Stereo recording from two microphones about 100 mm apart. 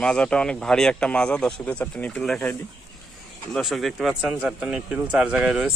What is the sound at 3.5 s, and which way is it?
Speech, centre (ahead or behind).